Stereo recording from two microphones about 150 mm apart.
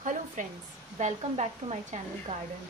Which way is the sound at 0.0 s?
55° right (ahead or behind).